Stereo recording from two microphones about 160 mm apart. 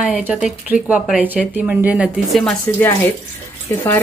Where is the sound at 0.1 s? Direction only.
5° right (ahead or behind).